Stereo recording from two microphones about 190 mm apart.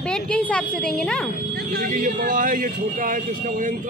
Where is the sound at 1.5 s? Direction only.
55° right (ahead or behind).